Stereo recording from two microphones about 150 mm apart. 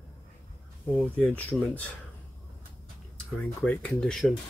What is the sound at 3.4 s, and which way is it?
Speech, 10° left (ahead or behind).